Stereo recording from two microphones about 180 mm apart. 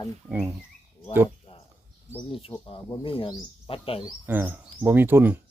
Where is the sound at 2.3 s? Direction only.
30° left (ahead or behind).